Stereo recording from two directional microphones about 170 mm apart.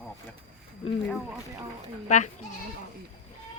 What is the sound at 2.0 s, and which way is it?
Speech, 45° left (ahead or behind).